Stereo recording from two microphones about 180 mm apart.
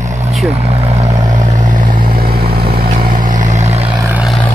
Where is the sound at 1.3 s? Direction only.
50° right (ahead or behind).